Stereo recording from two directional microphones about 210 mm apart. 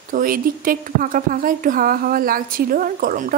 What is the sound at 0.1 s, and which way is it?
A woman's voice, 40° right (ahead or behind).